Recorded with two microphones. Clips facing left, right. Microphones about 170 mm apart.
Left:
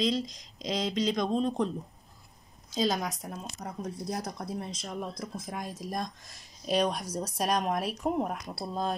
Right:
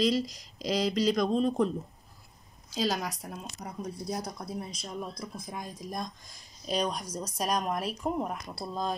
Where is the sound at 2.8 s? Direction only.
5° right (ahead or behind).